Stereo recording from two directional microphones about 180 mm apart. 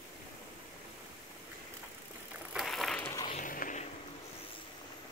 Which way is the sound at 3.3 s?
45° left (ahead or behind).